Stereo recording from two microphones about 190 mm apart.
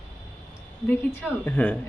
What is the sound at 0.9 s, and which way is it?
Speech, 10° left (ahead or behind).